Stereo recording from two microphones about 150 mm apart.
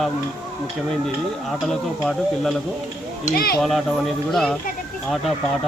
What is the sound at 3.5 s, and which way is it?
Speech, centre (ahead or behind).